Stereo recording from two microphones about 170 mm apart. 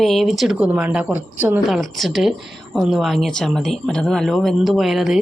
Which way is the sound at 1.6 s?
Centre (ahead or behind).